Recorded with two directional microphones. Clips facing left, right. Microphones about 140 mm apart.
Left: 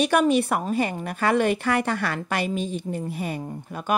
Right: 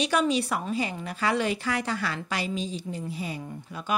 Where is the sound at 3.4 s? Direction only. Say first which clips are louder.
Left 5 dB; 45° left (ahead or behind).